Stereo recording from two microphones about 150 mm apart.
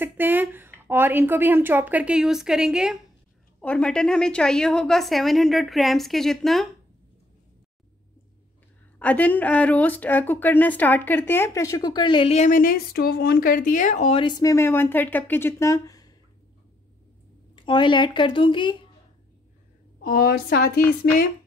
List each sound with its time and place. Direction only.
0.0 s speech: 15° right (ahead or behind)
3.6 s a woman's voice: 5° left (ahead or behind)
9.0 s speech: 10° left (ahead or behind); by 12.4 s 35° left (ahead or behind)
12.4 s a woman's voice: 60° left (ahead or behind)
14.2 s speech: 25° left (ahead or behind)
17.6 s speech: 30° left (ahead or behind)
20.0 s speech: 75° left (ahead or behind)